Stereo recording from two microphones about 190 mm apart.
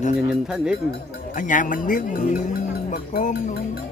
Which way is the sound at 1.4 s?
45° left (ahead or behind).